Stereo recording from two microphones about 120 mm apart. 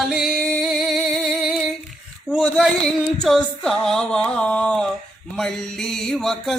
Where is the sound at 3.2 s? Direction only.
5° left (ahead or behind).